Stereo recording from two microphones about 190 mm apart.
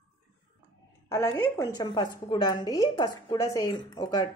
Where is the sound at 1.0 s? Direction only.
15° left (ahead or behind).